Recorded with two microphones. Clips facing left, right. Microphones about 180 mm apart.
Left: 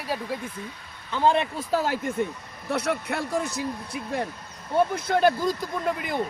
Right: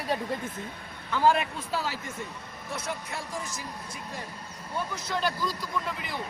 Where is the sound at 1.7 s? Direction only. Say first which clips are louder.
Left 9 dB; 50° left (ahead or behind).